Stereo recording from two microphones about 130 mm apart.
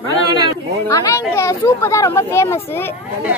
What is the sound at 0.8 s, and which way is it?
Speech, 25° left (ahead or behind).